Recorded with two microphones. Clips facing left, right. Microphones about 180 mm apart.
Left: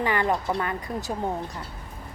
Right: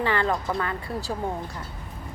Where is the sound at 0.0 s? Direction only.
15° left (ahead or behind).